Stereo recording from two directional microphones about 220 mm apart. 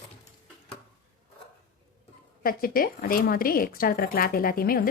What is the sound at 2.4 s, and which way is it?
Speech, 40° left (ahead or behind).